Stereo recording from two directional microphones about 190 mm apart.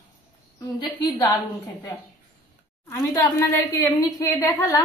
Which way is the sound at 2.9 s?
15° left (ahead or behind).